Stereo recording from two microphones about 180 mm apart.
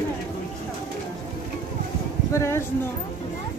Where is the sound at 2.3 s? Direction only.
15° left (ahead or behind).